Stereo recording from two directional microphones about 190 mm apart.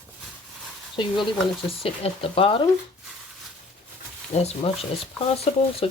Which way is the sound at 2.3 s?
30° left (ahead or behind).